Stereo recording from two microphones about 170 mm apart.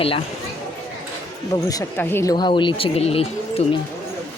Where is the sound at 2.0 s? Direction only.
15° left (ahead or behind).